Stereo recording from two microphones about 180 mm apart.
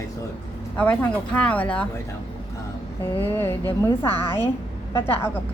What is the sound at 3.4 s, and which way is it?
Speech, 30° left (ahead or behind).